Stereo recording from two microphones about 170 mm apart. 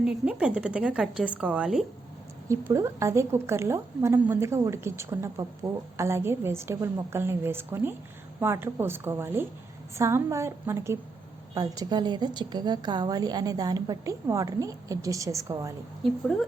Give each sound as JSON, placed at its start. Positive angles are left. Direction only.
{"t": 0.0, "sound": "speech", "side_deg": -5}
{"t": 2.5, "sound": "a woman's voice", "side_deg": -15}